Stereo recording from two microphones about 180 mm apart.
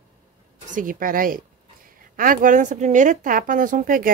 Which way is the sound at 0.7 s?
50° right (ahead or behind).